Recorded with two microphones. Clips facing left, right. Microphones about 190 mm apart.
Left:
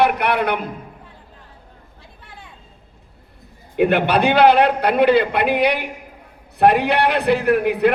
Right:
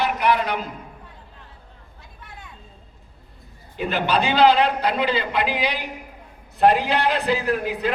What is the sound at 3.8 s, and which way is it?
A man's voice, 60° left (ahead or behind).